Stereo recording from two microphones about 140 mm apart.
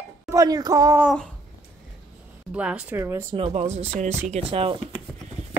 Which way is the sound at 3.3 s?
45° right (ahead or behind).